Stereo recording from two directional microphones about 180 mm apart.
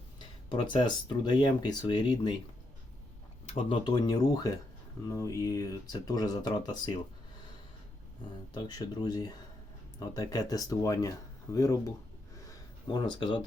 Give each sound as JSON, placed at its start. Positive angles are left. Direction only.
{"t": 0.2, "sound": "speech", "side_deg": 25}
{"t": 3.7, "sound": "speech", "side_deg": 25}
{"t": 8.5, "sound": "speech", "side_deg": 25}
{"t": 12.5, "sound": "a sound", "side_deg": 25}